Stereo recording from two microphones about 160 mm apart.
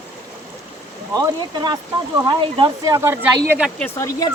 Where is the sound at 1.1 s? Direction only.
25° right (ahead or behind).